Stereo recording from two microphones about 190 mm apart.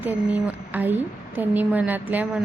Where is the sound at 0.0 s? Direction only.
10° right (ahead or behind).